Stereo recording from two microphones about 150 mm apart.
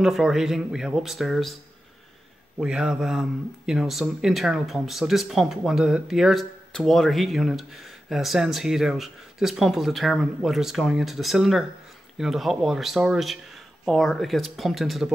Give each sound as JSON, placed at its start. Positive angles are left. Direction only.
{"t": 0.0, "sound": "speech", "side_deg": 0}
{"t": 2.6, "sound": "speech", "side_deg": -5}